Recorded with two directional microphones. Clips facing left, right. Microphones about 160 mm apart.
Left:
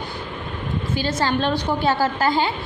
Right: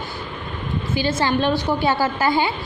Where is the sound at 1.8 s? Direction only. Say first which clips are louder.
Left 2 dB; 45° left (ahead or behind).